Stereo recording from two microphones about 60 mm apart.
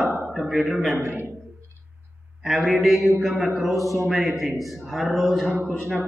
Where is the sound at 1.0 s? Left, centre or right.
Right.